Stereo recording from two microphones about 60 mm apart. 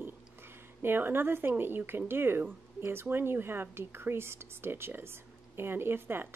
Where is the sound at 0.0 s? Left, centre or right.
Right.